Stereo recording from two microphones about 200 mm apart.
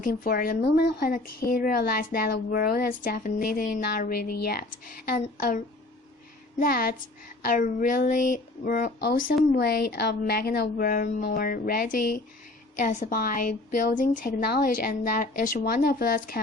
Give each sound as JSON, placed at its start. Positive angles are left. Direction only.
{"t": 0.0, "sound": "a woman's voice", "side_deg": 45}